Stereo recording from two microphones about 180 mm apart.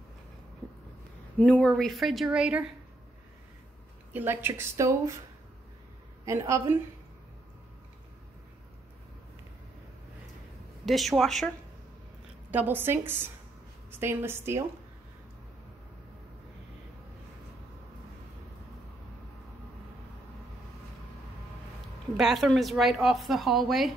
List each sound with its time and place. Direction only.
1.4 s a woman's voice: 5° left (ahead or behind)
4.1 s speech: 10° right (ahead or behind)
6.2 s speech: 15° right (ahead or behind)
10.9 s a woman's voice: centre (ahead or behind)
12.4 s speech: 10° right (ahead or behind)
22.1 s a woman's voice: centre (ahead or behind)